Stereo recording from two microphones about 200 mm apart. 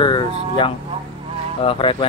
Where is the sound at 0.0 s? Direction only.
25° left (ahead or behind).